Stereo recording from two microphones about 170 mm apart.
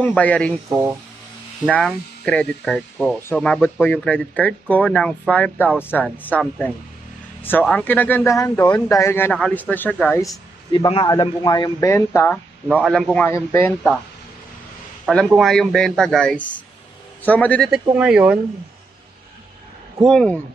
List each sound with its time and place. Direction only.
0.0 s a man's voice: 10° left (ahead or behind)
0.7 s speech: 15° right (ahead or behind)
1.7 s a man's voice: 5° left (ahead or behind)
7.4 s a man's voice: 10° left (ahead or behind)
10.3 s a sound: 20° left (ahead or behind)
11.1 s speech: 25° left (ahead or behind)
12.7 s a man's voice: 5° left (ahead or behind)
15.0 s a man's voice: centre (ahead or behind)
17.6 s a man's voice: 5° right (ahead or behind)
20.0 s a man's voice: 5° left (ahead or behind)